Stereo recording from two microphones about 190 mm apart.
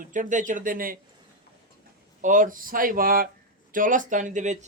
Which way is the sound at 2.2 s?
45° right (ahead or behind).